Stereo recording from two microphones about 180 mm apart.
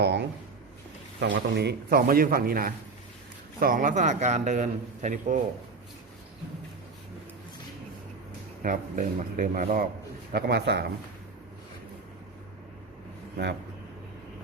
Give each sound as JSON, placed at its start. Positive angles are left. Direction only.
{"t": 0.0, "sound": "a sound", "side_deg": -70}
{"t": 1.2, "sound": "a man's voice", "side_deg": -70}
{"t": 8.6, "sound": "a man's voice", "side_deg": -50}
{"t": 10.3, "sound": "a man's voice", "side_deg": -60}